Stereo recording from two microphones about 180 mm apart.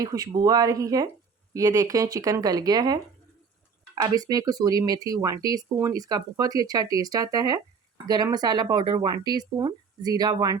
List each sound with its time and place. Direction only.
0.0 s speech: 20° right (ahead or behind)